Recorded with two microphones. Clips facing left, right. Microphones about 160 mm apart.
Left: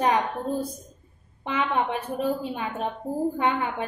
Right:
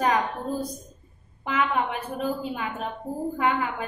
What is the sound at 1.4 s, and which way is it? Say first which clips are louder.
A woman's voice: even; 30° left (ahead or behind).